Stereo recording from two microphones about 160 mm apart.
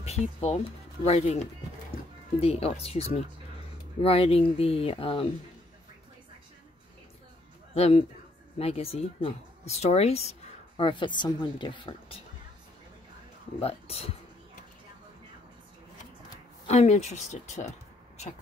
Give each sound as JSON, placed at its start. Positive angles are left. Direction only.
{"t": 0.0, "sound": "speech", "side_deg": 40}
{"t": 7.7, "sound": "a man's voice", "side_deg": 40}
{"t": 10.8, "sound": "a woman's voice", "side_deg": 30}
{"t": 13.6, "sound": "speech", "side_deg": 40}
{"t": 16.6, "sound": "speech", "side_deg": 45}